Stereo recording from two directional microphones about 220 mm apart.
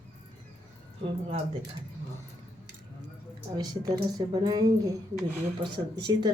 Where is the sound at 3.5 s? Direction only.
15° right (ahead or behind).